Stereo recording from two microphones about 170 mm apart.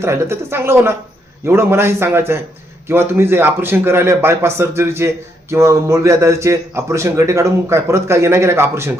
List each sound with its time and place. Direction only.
0.0 s a man's voice: 15° right (ahead or behind)